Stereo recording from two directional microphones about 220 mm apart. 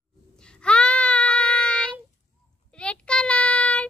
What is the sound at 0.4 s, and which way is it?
Child singing, 5° left (ahead or behind).